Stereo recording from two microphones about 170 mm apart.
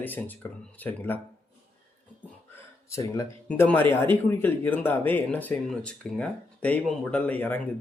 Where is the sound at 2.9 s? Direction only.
20° left (ahead or behind).